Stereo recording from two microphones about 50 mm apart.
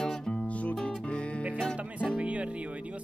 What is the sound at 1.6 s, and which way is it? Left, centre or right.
Speech, centre.